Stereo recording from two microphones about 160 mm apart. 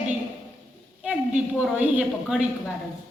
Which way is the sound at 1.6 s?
5° right (ahead or behind).